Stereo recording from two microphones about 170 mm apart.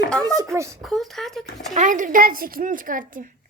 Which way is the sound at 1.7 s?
50° right (ahead or behind).